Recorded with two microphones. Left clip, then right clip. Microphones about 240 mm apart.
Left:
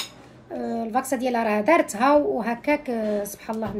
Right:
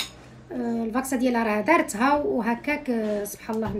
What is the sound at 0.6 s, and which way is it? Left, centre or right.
Speech, centre.